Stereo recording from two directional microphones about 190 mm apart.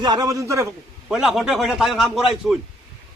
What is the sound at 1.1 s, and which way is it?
A man's voice, 5° right (ahead or behind).